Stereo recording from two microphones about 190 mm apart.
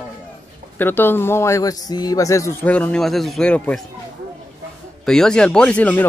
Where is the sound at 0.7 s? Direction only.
10° left (ahead or behind).